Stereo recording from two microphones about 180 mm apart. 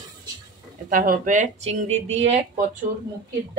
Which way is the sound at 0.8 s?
50° right (ahead or behind).